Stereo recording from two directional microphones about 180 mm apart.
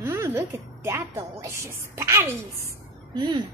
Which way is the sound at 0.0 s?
15° right (ahead or behind).